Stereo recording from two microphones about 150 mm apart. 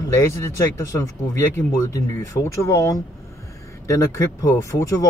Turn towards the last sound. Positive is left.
turn(degrees=20)  # may be behind; listen again after turning